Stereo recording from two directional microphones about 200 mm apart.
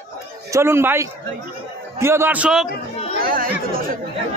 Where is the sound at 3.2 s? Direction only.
45° right (ahead or behind).